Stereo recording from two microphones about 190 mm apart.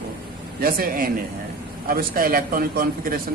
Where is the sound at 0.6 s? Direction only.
50° right (ahead or behind).